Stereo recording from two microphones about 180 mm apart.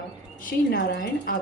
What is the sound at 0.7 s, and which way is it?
Speech, 70° left (ahead or behind).